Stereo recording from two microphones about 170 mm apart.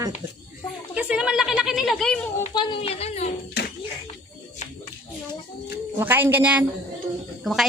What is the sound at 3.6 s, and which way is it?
Music, 70° left (ahead or behind).